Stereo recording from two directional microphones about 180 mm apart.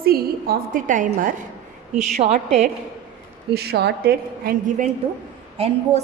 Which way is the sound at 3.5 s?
60° right (ahead or behind).